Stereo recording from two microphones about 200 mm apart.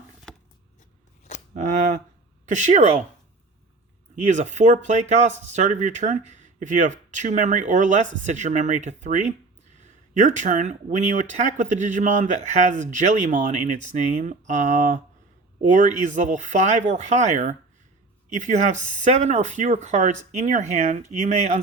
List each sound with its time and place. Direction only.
1.5 s cap gun: 40° right (ahead or behind)
2.5 s speech: 35° right (ahead or behind)
4.3 s speech: 35° right (ahead or behind)